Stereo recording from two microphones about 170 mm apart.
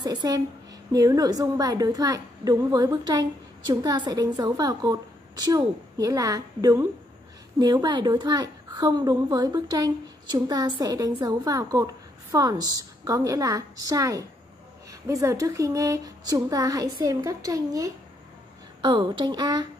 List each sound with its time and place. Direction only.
0.0 s a woman's voice: 25° right (ahead or behind)